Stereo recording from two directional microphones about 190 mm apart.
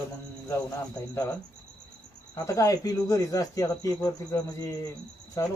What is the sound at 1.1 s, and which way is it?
Speech, 10° left (ahead or behind).